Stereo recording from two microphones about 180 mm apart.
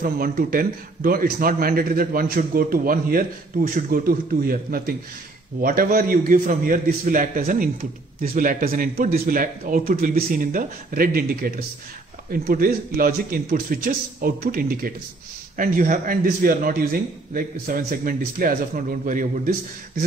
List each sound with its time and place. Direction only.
0.0 s speech: 55° right (ahead or behind)